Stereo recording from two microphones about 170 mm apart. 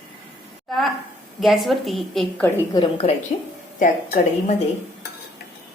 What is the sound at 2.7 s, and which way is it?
Speech, 25° left (ahead or behind).